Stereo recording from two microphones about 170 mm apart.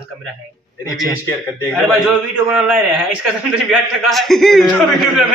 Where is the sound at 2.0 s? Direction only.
5° right (ahead or behind).